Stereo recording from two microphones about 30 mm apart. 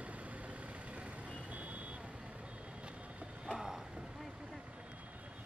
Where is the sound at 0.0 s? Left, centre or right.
Right.